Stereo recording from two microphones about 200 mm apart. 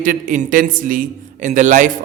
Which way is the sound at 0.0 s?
40° right (ahead or behind).